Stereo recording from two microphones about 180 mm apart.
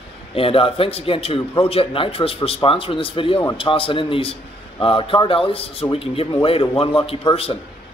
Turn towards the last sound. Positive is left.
turn(degrees=30)  # may be behind; listen again after turning